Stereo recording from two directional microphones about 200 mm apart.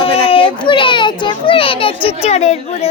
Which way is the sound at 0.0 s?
25° left (ahead or behind).